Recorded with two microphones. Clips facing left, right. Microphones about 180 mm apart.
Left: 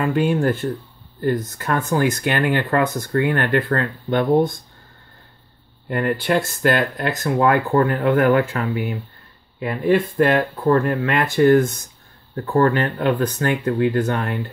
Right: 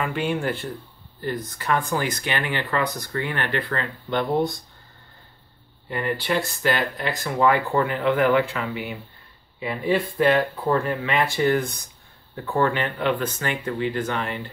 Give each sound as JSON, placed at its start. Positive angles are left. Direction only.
{"t": 0.0, "sound": "speech", "side_deg": 40}
{"t": 5.9, "sound": "speech", "side_deg": 55}